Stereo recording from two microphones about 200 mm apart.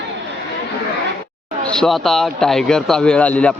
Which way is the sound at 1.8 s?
Centre (ahead or behind).